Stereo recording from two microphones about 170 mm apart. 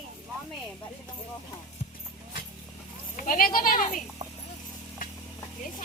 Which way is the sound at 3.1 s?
50° left (ahead or behind).